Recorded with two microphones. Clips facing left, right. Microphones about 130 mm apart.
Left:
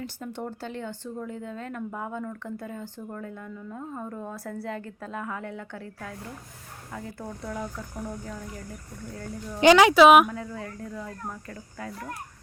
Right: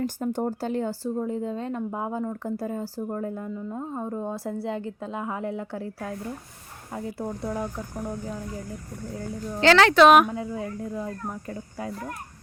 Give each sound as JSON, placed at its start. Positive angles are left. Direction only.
{"t": 0.0, "sound": "speech", "side_deg": -40}
{"t": 9.6, "sound": "speech", "side_deg": 15}
{"t": 10.3, "sound": "speech", "side_deg": -20}